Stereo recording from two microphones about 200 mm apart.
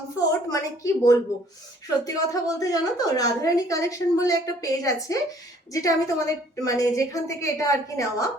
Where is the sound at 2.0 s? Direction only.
15° left (ahead or behind).